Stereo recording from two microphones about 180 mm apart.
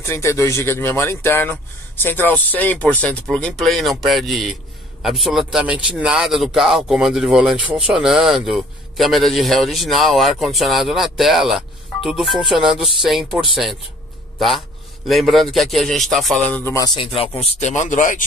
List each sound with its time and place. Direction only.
0.0 s a man's voice: 15° left (ahead or behind); by 13.7 s centre (ahead or behind)
15.0 s a man's voice: centre (ahead or behind); by 18.2 s 45° left (ahead or behind)